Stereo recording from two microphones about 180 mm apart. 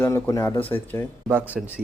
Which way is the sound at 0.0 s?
15° left (ahead or behind).